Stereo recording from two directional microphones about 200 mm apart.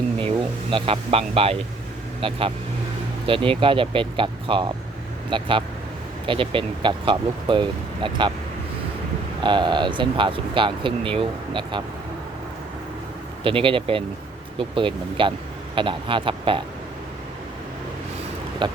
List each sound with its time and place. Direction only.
0.2 s speech: 25° right (ahead or behind)
9.4 s speech: 25° right (ahead or behind)
13.4 s speech: 25° right (ahead or behind)
18.6 s speech: 25° right (ahead or behind)